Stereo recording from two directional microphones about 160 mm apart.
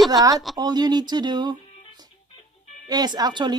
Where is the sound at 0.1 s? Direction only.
20° right (ahead or behind).